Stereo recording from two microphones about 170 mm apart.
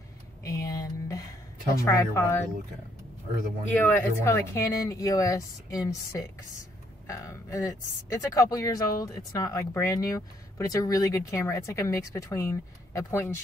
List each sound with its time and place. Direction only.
0.4 s a sound: 20° left (ahead or behind)
1.8 s speech: 20° left (ahead or behind)
3.7 s speech: 10° left (ahead or behind)